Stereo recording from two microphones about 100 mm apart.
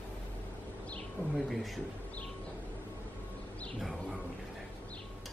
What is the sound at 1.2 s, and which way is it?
Bird, 20° left (ahead or behind).